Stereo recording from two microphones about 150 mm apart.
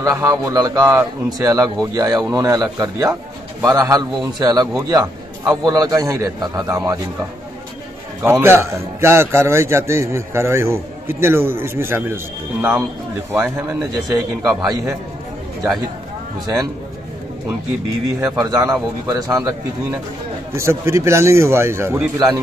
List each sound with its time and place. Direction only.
0.0 s a man's voice: 20° right (ahead or behind)
8.2 s a man's voice: 15° right (ahead or behind)
13.3 s a man's voice: 15° right (ahead or behind)
18.2 s a man's voice: 20° right (ahead or behind)